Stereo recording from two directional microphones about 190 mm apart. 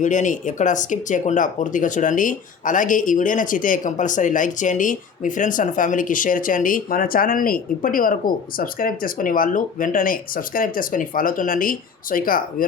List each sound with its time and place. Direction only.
0.0 s speech: 40° left (ahead or behind)